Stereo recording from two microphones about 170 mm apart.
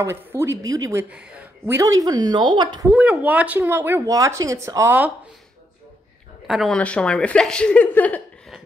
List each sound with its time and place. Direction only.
0.0 s speech: 15° right (ahead or behind)
1.1 s speech: 5° right (ahead or behind)
1.8 s speech: 20° right (ahead or behind)
2.9 s speech: 10° right (ahead or behind)
6.4 s a woman's voice: centre (ahead or behind)